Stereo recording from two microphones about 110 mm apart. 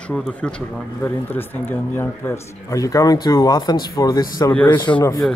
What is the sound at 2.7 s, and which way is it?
Speech, 30° left (ahead or behind).